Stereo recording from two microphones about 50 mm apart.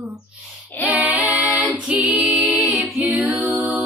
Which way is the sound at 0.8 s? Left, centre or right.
Right.